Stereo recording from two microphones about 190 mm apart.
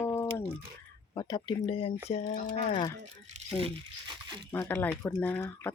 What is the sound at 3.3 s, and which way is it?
Crumpling, 40° right (ahead or behind).